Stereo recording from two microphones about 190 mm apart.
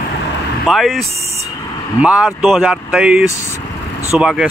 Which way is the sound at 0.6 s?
Centre (ahead or behind).